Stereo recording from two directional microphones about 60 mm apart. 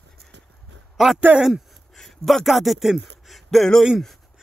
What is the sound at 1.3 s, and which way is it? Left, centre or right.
Speech, right.